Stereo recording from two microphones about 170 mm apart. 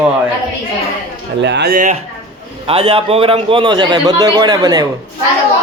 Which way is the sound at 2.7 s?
35° right (ahead or behind).